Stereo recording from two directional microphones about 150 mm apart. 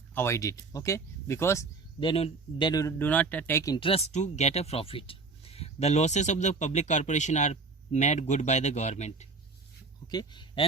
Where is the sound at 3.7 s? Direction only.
35° left (ahead or behind).